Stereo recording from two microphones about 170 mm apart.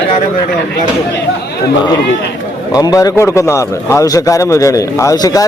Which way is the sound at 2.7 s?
20° left (ahead or behind).